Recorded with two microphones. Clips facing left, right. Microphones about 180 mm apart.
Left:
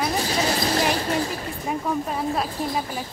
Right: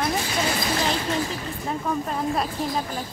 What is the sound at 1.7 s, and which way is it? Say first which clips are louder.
Speech: left 1 dB; 5° left (ahead or behind).